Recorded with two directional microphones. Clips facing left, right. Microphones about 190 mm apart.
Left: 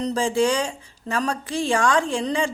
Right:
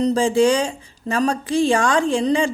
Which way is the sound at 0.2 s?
20° right (ahead or behind).